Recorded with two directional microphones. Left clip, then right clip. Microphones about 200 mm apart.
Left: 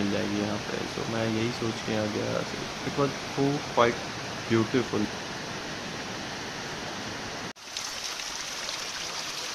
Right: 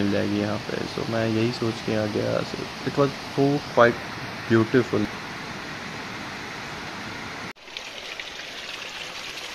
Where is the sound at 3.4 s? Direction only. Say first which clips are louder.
Right 6 dB; 20° right (ahead or behind).